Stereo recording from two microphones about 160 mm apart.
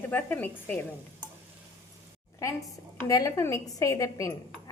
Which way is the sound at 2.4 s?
20° left (ahead or behind).